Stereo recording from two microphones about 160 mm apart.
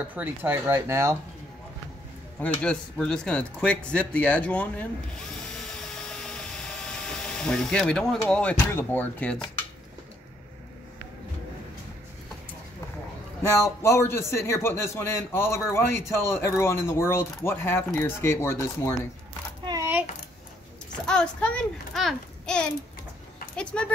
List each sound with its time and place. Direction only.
0.1 s speech: 10° right (ahead or behind)
2.4 s speech: 5° left (ahead or behind)
5.6 s a sound: 5° left (ahead or behind)
13.4 s speech: 20° left (ahead or behind)
19.6 s a sound: 25° right (ahead or behind)
21.1 s a child's voice: 5° left (ahead or behind)